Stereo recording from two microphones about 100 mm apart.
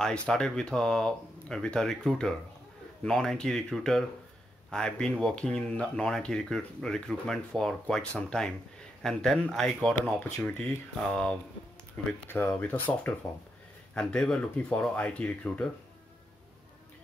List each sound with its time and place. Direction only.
0.0 s speech: 5° left (ahead or behind)
13.9 s speech: 5° left (ahead or behind)